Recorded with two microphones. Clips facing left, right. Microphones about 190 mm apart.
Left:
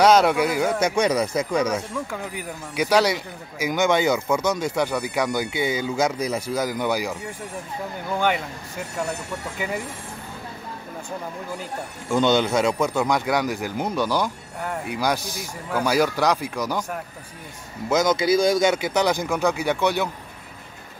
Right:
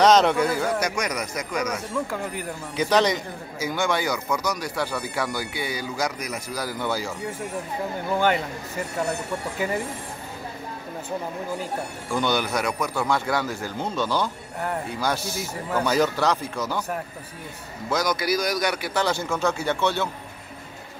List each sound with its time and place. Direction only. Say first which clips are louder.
0.0 s a man's voice: left 1 dB; 10° left (ahead or behind)
0.7 s speech: left 6 dB; 25° left (ahead or behind)
2.0 s speech: right 1 dB; 5° left (ahead or behind)
12.1 s a man's voice: left 5 dB; 20° left (ahead or behind)
17.8 s speech: left 5 dB; 20° left (ahead or behind)